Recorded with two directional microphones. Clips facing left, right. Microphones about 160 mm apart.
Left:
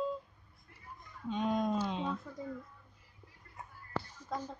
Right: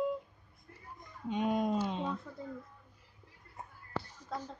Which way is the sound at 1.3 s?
10° right (ahead or behind).